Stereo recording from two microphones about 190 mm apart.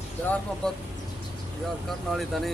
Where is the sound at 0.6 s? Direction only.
5° left (ahead or behind).